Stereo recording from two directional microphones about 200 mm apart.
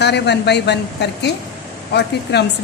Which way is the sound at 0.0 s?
55° left (ahead or behind).